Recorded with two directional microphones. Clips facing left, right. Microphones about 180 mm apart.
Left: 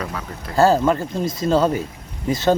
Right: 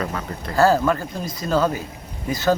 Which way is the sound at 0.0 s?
Centre (ahead or behind).